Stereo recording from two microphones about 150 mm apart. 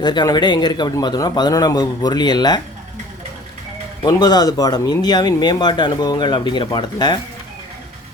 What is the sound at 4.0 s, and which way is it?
Speech, 25° left (ahead or behind).